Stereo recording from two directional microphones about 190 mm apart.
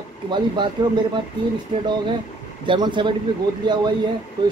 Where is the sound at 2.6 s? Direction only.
25° right (ahead or behind).